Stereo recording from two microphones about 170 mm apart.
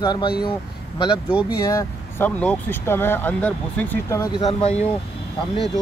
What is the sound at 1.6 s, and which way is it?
Speech, 20° left (ahead or behind).